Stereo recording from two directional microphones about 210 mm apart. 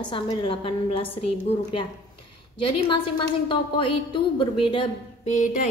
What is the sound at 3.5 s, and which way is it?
A woman's voice, 25° left (ahead or behind).